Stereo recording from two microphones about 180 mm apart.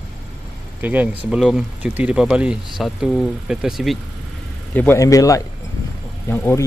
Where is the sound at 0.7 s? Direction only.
10° right (ahead or behind).